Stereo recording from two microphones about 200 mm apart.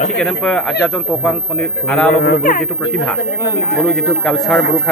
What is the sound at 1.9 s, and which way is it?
Speech, 5° left (ahead or behind).